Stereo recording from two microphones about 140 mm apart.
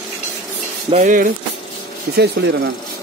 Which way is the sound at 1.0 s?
70° right (ahead or behind).